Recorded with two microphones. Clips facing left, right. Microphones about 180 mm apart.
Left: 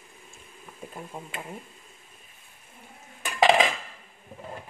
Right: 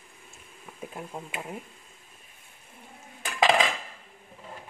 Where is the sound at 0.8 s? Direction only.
5° right (ahead or behind).